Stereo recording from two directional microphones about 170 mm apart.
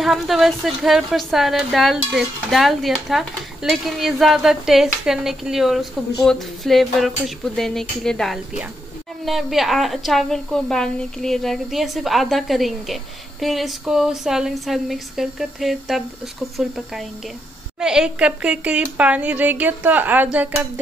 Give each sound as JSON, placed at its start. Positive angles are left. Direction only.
{"t": 0.0, "sound": "a woman's voice", "side_deg": 0}